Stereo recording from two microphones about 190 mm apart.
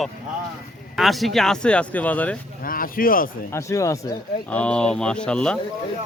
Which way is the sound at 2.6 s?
50° left (ahead or behind).